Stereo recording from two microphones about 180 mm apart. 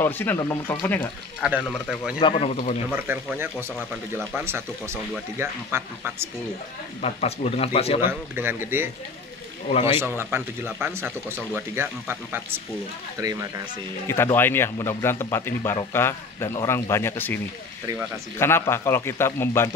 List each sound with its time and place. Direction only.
0.0 s a man's voice: 10° left (ahead or behind)
1.4 s speech: 5° right (ahead or behind)
2.1 s speech: 30° left (ahead or behind)
2.9 s speech: 10° right (ahead or behind)
7.0 s speech: 35° left (ahead or behind)
8.1 s speech: 10° right (ahead or behind)
14.0 s a man's voice: 15° left (ahead or behind)
18.4 s a man's voice: 15° left (ahead or behind)